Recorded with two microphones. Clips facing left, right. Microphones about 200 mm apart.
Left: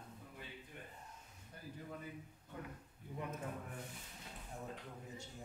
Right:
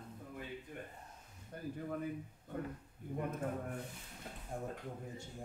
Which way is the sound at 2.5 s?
50° right (ahead or behind).